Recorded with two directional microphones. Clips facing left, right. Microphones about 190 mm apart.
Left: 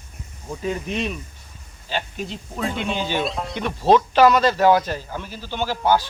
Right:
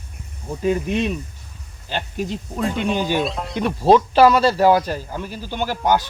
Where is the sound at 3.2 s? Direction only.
Centre (ahead or behind).